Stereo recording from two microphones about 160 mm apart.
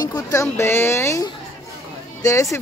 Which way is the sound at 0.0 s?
20° left (ahead or behind).